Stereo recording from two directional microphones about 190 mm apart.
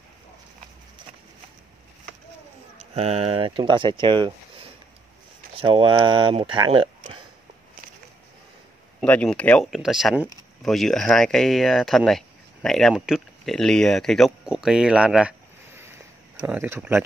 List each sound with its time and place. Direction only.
2.8 s speech: 30° right (ahead or behind)
9.0 s speech: 5° left (ahead or behind); by 17.0 s 10° right (ahead or behind)